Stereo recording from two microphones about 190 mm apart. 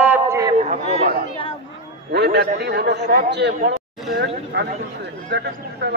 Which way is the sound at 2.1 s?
60° right (ahead or behind).